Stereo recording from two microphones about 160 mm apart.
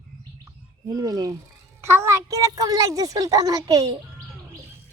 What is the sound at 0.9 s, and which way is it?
A child's voice, 25° right (ahead or behind).